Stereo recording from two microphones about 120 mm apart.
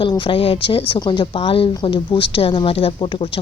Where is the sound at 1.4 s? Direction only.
50° left (ahead or behind).